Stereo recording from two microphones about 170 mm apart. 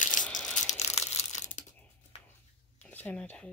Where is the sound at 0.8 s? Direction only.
40° left (ahead or behind).